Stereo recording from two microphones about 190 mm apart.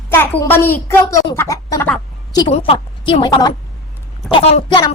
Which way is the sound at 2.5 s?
30° left (ahead or behind).